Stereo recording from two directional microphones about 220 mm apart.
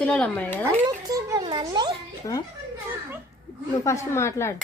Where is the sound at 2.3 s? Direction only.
15° left (ahead or behind).